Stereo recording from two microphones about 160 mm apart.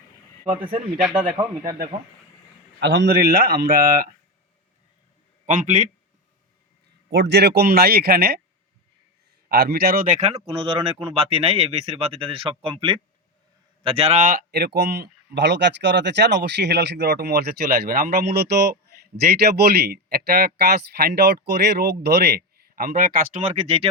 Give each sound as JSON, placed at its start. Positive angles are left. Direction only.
{"t": 2.8, "sound": "speech", "side_deg": -90}
{"t": 5.5, "sound": "speech", "side_deg": -50}
{"t": 7.1, "sound": "speech", "side_deg": -90}
{"t": 9.5, "sound": "a man's voice", "side_deg": -85}
{"t": 10.2, "sound": "speech", "side_deg": -40}
{"t": 13.8, "sound": "speech", "side_deg": -40}